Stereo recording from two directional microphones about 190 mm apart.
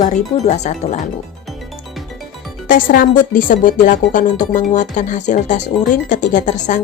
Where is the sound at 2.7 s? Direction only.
50° left (ahead or behind).